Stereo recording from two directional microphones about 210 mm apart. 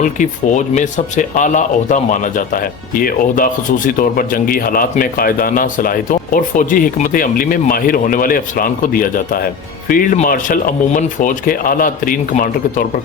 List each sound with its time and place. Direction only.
0.0 s speech: 35° left (ahead or behind)